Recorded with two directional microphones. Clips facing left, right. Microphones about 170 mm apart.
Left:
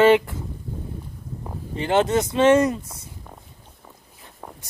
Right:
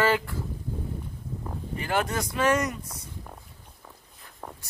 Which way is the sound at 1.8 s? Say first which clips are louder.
Left 9 dB; 25° left (ahead or behind).